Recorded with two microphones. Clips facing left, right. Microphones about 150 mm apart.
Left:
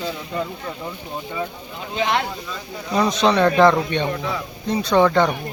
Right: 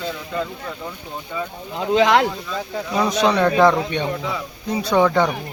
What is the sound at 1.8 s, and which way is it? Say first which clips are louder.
Speech: right 7 dB; 90° right.